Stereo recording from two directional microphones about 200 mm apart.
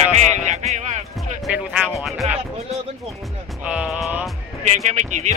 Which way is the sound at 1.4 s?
5° right (ahead or behind).